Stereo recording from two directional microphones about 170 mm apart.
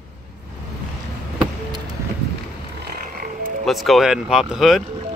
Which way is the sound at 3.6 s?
Centre (ahead or behind).